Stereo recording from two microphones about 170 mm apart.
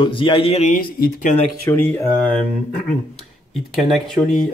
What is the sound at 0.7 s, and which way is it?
Speech, 60° left (ahead or behind).